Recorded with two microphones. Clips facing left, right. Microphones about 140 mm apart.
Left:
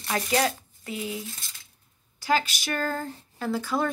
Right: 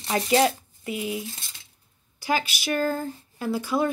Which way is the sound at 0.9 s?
15° right (ahead or behind).